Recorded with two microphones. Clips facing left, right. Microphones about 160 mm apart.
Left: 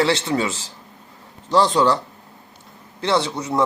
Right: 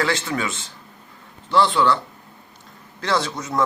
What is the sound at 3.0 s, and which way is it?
Speech, 25° left (ahead or behind).